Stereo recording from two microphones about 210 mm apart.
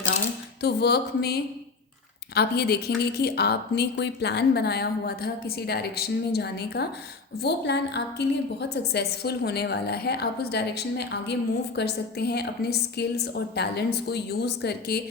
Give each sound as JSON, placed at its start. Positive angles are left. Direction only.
{"t": 0.6, "sound": "a woman's voice", "side_deg": 50}